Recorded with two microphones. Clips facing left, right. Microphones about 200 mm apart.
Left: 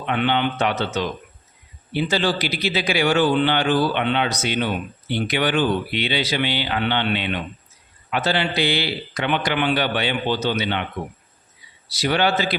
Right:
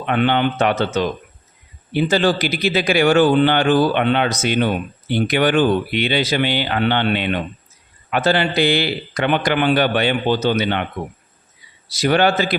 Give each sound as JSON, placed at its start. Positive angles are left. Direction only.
{"t": 0.0, "sound": "a man's voice", "side_deg": -50}
{"t": 11.9, "sound": "a man's voice", "side_deg": -50}